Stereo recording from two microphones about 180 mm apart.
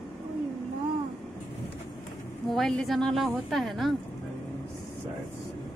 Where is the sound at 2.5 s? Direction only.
Centre (ahead or behind).